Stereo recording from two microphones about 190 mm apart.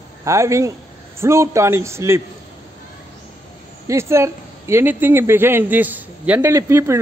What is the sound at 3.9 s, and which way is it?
Speech, 15° right (ahead or behind).